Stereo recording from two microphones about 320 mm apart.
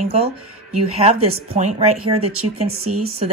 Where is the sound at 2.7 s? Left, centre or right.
Right.